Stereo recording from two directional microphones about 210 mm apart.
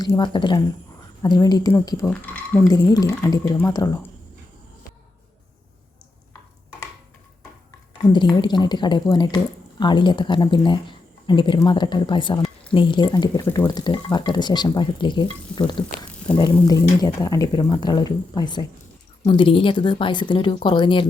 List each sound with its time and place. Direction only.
0.0 s speech: 20° left (ahead or behind)
8.1 s speech: 20° left (ahead or behind)